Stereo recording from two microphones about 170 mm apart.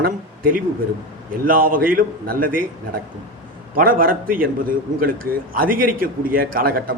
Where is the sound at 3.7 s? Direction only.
55° right (ahead or behind).